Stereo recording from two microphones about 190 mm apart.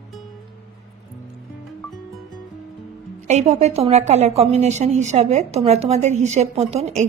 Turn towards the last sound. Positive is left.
turn(degrees=-35)  # may be behind; listen again after turning